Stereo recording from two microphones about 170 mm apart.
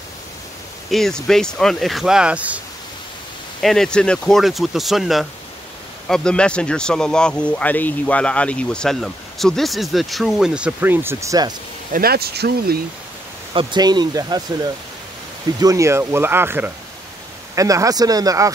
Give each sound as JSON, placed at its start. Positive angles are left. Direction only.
{"t": 0.8, "sound": "speech", "side_deg": 0}
{"t": 3.6, "sound": "speech", "side_deg": 5}
{"t": 11.9, "sound": "speech", "side_deg": -65}
{"t": 13.5, "sound": "speech", "side_deg": -30}